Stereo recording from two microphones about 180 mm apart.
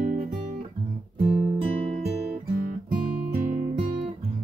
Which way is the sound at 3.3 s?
45° right (ahead or behind).